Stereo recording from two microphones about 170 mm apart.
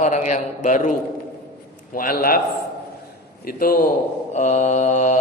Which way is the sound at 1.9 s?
55° left (ahead or behind).